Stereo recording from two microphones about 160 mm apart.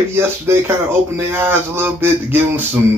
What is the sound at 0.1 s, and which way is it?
A man's voice, 15° right (ahead or behind).